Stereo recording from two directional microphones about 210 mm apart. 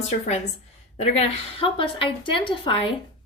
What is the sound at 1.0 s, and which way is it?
A woman's voice, 25° left (ahead or behind).